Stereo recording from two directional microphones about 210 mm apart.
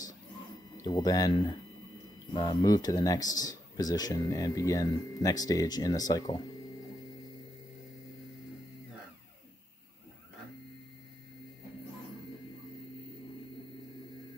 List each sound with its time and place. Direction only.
0.8 s speech: 20° left (ahead or behind)